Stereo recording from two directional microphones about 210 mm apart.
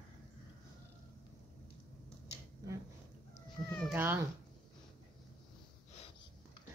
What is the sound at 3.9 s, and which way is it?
Speech, 10° right (ahead or behind).